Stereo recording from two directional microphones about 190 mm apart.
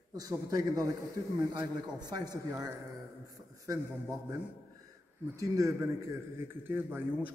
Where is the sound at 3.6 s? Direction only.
15° right (ahead or behind).